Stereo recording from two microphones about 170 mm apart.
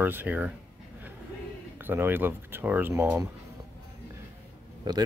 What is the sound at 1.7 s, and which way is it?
Speech, 10° right (ahead or behind).